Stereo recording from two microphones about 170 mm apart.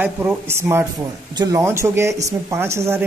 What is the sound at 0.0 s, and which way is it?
Speech, 10° right (ahead or behind).